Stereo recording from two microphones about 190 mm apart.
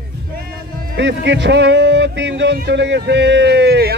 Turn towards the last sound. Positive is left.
turn(degrees=-60)  # may be behind; listen again after turning